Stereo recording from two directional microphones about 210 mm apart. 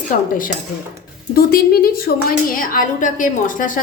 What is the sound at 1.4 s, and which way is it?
A woman's voice, 45° left (ahead or behind).